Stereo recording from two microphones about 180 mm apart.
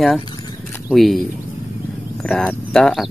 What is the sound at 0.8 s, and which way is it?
Speech, centre (ahead or behind).